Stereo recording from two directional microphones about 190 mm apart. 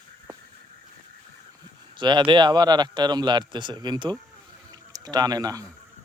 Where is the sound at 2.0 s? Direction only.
25° right (ahead or behind).